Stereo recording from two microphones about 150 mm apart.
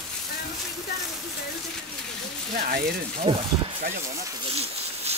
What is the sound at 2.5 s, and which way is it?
Speech, 70° right (ahead or behind).